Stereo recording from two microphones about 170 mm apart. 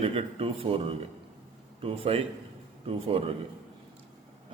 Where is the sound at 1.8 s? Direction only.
35° right (ahead or behind).